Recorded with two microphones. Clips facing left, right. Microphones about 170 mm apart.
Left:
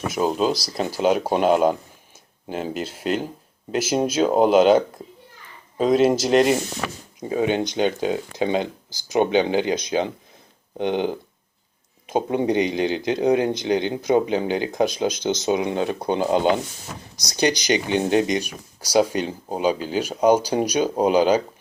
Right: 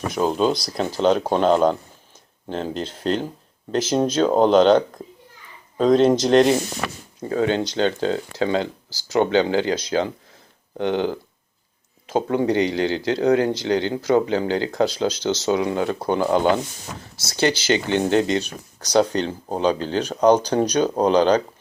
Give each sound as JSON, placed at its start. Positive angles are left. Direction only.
{"t": 0.1, "sound": "speech", "side_deg": 5}
{"t": 7.2, "sound": "speech", "side_deg": 15}